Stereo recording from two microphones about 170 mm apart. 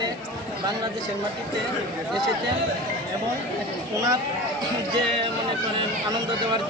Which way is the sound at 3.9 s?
20° right (ahead or behind).